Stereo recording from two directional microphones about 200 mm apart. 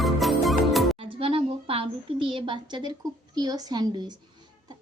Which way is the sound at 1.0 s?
30° right (ahead or behind).